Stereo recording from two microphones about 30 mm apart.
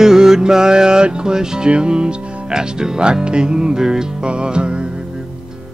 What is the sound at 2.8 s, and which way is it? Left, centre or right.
Music, right.